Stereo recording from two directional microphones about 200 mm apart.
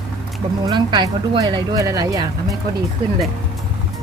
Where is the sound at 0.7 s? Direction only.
20° right (ahead or behind).